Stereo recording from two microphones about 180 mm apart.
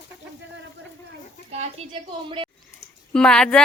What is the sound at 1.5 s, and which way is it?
Speech, 35° right (ahead or behind).